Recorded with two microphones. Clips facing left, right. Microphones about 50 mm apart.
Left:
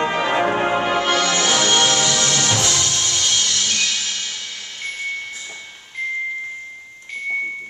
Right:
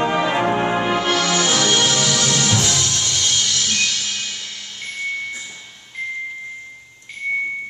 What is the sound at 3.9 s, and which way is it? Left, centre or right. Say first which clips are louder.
Music: even; centre.